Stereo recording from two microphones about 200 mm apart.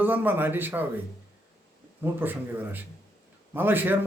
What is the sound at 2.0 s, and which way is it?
A man's voice, 10° right (ahead or behind).